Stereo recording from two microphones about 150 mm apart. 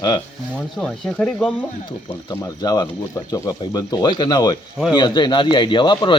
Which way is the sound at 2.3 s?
25° left (ahead or behind).